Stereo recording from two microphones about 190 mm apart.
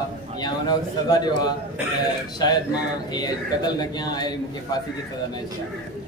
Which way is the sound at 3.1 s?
20° left (ahead or behind).